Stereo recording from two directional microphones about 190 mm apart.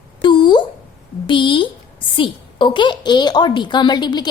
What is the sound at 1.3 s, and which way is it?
A woman's voice, 25° left (ahead or behind).